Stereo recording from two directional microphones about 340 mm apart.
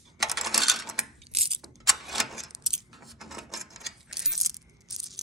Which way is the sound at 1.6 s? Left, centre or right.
Centre.